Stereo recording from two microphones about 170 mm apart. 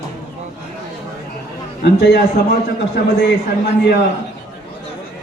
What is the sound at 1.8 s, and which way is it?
Speech, 70° left (ahead or behind).